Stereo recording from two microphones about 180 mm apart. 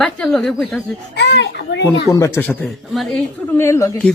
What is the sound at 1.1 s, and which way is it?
Speech, 70° left (ahead or behind).